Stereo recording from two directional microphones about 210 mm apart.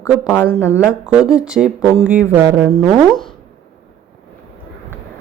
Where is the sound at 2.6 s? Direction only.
Centre (ahead or behind).